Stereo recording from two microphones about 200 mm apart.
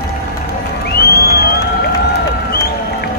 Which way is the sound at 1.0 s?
50° left (ahead or behind).